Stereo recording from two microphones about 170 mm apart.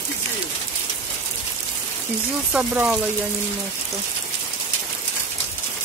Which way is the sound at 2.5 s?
5° right (ahead or behind).